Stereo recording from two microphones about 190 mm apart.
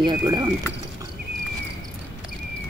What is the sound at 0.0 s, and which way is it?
Speech, 25° right (ahead or behind).